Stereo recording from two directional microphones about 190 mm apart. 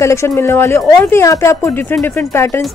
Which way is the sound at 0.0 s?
15° left (ahead or behind).